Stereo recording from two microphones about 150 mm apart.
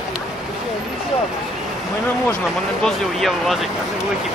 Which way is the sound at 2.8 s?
Centre (ahead or behind).